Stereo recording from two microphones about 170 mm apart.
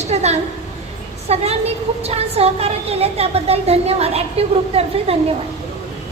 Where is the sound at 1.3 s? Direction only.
35° right (ahead or behind).